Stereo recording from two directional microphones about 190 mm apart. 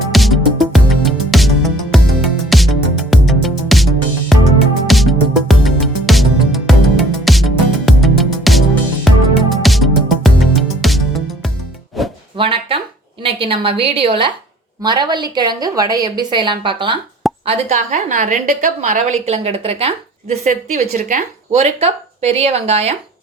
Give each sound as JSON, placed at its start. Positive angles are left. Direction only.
{"t": 0.1, "sound": "music", "side_deg": 0}
{"t": 12.4, "sound": "a sound", "side_deg": -30}
{"t": 13.2, "sound": "a woman's voice", "side_deg": -30}